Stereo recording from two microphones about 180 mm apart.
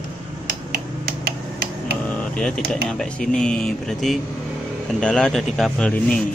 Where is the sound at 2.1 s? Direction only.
5° left (ahead or behind).